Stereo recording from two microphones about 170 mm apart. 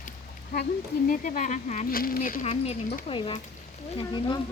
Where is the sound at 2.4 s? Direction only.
35° left (ahead or behind).